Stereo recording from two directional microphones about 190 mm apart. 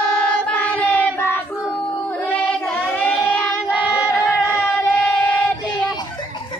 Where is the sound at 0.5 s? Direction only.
5° left (ahead or behind).